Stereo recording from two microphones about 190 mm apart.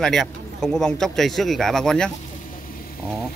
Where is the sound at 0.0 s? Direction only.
Centre (ahead or behind).